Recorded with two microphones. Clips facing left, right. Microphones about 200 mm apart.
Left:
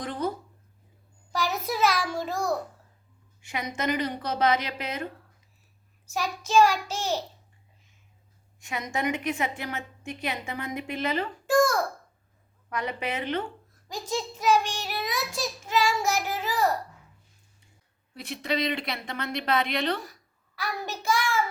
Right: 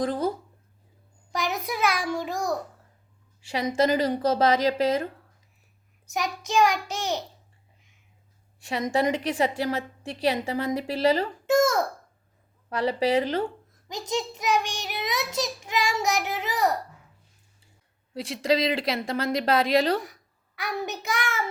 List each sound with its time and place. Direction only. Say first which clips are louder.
1.3 s a sound: even; 15° right (ahead or behind)
1.8 s child singing: left 1 dB; 55° right (ahead or behind)
2.2 s child singing: even; 15° right (ahead or behind)
3.4 s a woman's voice: right 7 dB; 30° right (ahead or behind)
6.1 s child singing: even; 15° right (ahead or behind)
8.9 s a woman's voice: right 4 dB; 30° right (ahead or behind)
11.4 s a sound: right 1 dB; 20° right (ahead or behind)
12.7 s a woman's voice: right 8 dB; 30° right (ahead or behind)
14.1 s child singing: left 1 dB; 15° right (ahead or behind)
18.1 s a woman's voice: right 6 dB; 30° right (ahead or behind)
20.6 s child singing: right 3 dB; 20° right (ahead or behind)